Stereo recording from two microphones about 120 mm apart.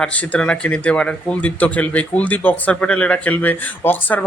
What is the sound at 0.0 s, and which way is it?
Speech, 10° left (ahead or behind).